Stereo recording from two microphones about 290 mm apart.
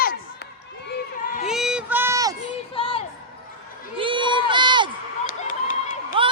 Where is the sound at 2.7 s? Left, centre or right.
Centre.